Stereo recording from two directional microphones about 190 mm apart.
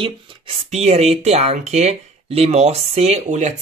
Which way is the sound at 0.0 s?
30° right (ahead or behind).